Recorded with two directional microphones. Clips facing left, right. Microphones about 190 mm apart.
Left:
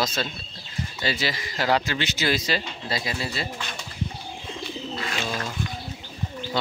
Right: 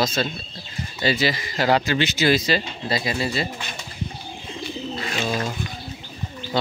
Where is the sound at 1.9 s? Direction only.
90° right.